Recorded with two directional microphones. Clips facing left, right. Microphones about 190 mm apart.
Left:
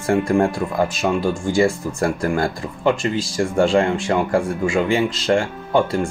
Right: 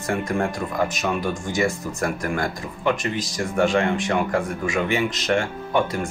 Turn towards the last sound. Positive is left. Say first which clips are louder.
# left 4 dB
turn(degrees=30)  # may be behind; listen again after turning